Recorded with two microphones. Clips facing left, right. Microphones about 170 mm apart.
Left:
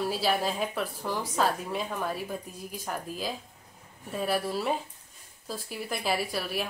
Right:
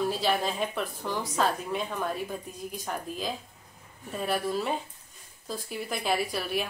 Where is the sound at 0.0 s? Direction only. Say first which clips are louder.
Even; 5° left (ahead or behind).